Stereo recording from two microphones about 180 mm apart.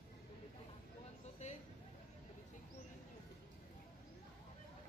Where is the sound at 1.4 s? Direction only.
40° left (ahead or behind).